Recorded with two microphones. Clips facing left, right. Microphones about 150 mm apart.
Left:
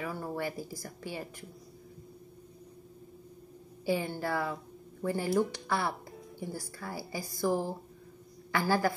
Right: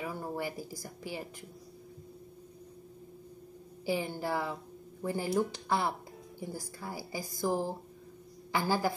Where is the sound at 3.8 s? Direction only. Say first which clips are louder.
Left 2 dB; 15° right (ahead or behind).